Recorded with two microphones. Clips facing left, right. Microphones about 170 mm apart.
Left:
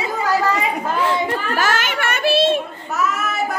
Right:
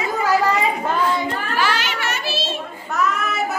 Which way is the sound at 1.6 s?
50° left (ahead or behind).